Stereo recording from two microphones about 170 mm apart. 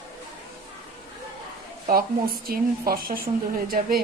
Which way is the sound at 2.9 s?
60° right (ahead or behind).